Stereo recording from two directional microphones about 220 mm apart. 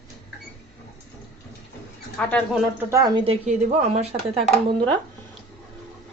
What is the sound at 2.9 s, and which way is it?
Speech, 15° right (ahead or behind).